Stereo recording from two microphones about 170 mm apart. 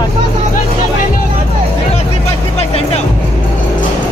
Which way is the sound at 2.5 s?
35° left (ahead or behind).